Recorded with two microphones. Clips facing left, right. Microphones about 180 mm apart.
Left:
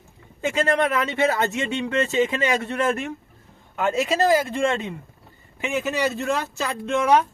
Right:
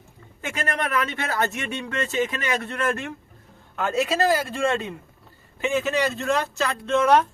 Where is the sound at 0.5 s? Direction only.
20° left (ahead or behind).